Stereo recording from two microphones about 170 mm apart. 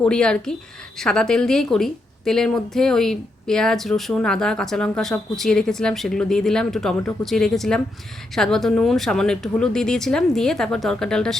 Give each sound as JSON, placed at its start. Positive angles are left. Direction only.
{"t": 0.0, "sound": "a woman's voice", "side_deg": 5}